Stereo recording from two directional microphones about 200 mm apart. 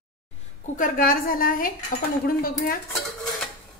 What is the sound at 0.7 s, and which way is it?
Speech, 40° left (ahead or behind).